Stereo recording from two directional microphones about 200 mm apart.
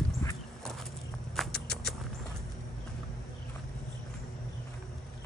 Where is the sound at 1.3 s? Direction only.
Centre (ahead or behind).